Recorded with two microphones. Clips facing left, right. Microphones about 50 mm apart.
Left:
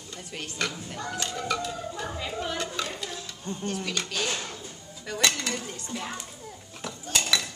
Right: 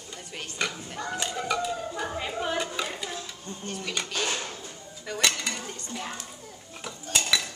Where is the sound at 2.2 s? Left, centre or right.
Right.